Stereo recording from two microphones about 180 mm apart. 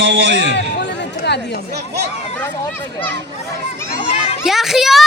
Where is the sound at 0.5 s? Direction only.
70° left (ahead or behind).